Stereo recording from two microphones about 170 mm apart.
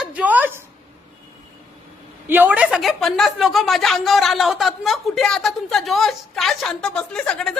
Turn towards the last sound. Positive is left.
turn(degrees=5)  # may be behind; listen again after turning